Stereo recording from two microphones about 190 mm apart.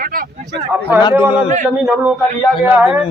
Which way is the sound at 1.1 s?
10° right (ahead or behind).